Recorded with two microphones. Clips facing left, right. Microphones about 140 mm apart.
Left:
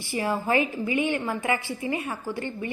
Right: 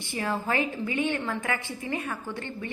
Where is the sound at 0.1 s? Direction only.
10° left (ahead or behind).